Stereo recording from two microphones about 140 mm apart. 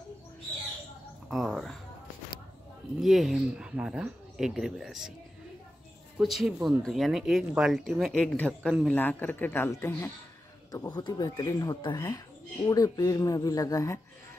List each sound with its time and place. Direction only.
1.3 s speech: centre (ahead or behind)
3.0 s speech: centre (ahead or behind)
6.1 s speech: 5° right (ahead or behind); by 13.9 s 25° left (ahead or behind)